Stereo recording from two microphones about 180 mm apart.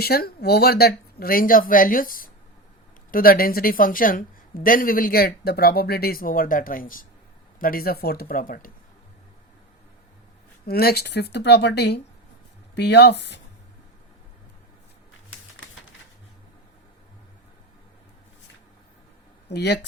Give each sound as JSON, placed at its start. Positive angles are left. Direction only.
{"t": 0.0, "sound": "speech", "side_deg": 60}
{"t": 10.7, "sound": "speech", "side_deg": 60}
{"t": 15.3, "sound": "typewriter", "side_deg": 90}
{"t": 19.5, "sound": "speech", "side_deg": 70}